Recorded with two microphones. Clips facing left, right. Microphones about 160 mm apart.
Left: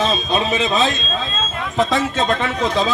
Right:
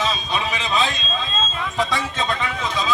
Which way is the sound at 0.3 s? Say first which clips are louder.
Left 5 dB; 45° left (ahead or behind).